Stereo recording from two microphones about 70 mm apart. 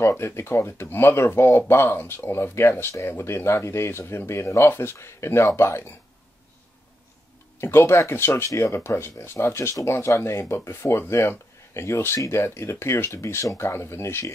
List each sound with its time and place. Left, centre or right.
0.0 s speech: left
7.6 s speech: left